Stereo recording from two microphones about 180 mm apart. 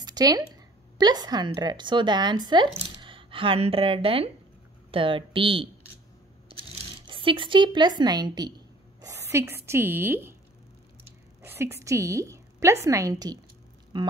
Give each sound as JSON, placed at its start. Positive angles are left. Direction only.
{"t": 0.0, "sound": "a sound", "side_deg": -20}
{"t": 0.9, "sound": "a woman's voice", "side_deg": -20}
{"t": 7.1, "sound": "speech", "side_deg": -30}
{"t": 11.4, "sound": "a woman's voice", "side_deg": -15}